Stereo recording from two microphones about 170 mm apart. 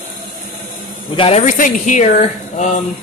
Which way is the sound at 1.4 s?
50° left (ahead or behind).